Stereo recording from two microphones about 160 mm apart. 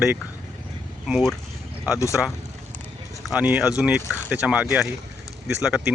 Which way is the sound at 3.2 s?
10° right (ahead or behind).